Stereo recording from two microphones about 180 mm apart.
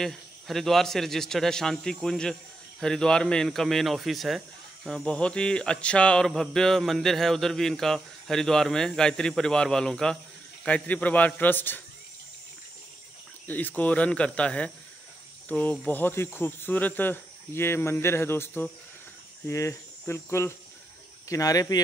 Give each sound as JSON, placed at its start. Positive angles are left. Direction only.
{"t": 0.0, "sound": "speech", "side_deg": 0}
{"t": 10.6, "sound": "cricket", "side_deg": 10}
{"t": 13.5, "sound": "cricket", "side_deg": 10}
{"t": 21.3, "sound": "speech", "side_deg": 20}